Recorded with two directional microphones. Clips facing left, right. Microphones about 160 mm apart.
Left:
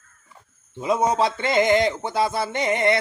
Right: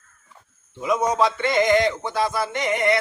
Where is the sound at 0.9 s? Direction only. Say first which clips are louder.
Even; 30° left (ahead or behind).